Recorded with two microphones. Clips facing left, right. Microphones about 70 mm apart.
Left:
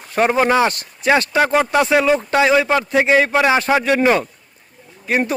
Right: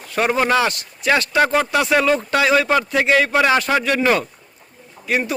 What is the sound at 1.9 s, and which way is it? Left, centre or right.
Speech, centre.